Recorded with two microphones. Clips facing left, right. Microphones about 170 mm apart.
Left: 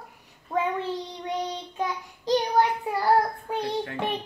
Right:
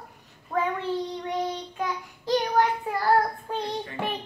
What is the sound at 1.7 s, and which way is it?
Child singing, 20° left (ahead or behind).